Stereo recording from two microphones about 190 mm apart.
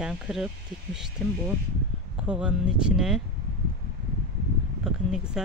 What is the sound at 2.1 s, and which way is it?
Speech, 5° right (ahead or behind).